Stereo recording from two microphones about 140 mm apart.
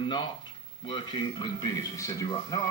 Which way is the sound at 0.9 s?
35° left (ahead or behind).